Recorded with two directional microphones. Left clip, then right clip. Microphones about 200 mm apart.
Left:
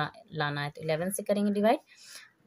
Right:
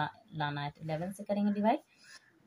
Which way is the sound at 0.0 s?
60° left (ahead or behind).